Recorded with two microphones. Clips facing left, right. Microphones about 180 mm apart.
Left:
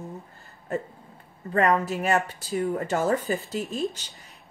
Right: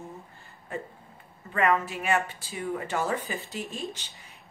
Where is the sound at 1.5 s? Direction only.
35° left (ahead or behind).